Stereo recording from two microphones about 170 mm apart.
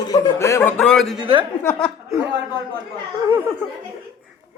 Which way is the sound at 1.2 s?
30° right (ahead or behind).